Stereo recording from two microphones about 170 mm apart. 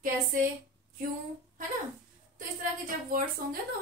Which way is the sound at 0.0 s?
55° right (ahead or behind).